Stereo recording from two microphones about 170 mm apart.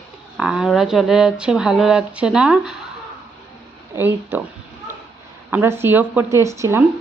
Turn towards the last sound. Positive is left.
turn(degrees=-15)  # may be behind; listen again after turning